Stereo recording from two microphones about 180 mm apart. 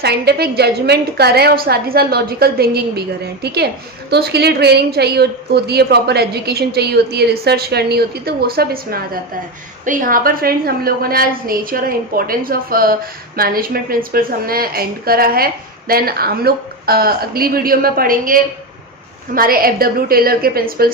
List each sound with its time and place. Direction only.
0.0 s a woman's voice: 65° right (ahead or behind)